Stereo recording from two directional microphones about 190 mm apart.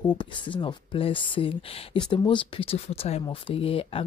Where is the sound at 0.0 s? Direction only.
25° left (ahead or behind).